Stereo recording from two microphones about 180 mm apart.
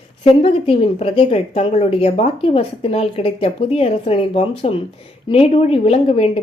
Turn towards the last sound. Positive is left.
turn(degrees=35)  # may be behind; listen again after turning